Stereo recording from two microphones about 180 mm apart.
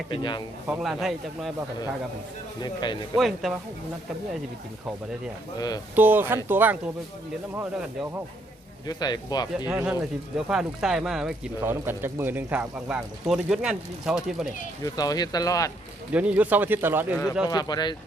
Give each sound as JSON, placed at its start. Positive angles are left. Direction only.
{"t": 0.1, "sound": "speech", "side_deg": 25}
{"t": 0.7, "sound": "speech", "side_deg": -5}
{"t": 2.6, "sound": "speech", "side_deg": 25}
{"t": 3.2, "sound": "speech", "side_deg": 0}
{"t": 5.5, "sound": "speech", "side_deg": 20}
{"t": 6.0, "sound": "speech", "side_deg": -10}
{"t": 8.9, "sound": "speech", "side_deg": 20}
{"t": 9.7, "sound": "speech", "side_deg": -10}
{"t": 14.8, "sound": "speech", "side_deg": 20}
{"t": 16.1, "sound": "speech", "side_deg": -10}
{"t": 17.5, "sound": "speech", "side_deg": 20}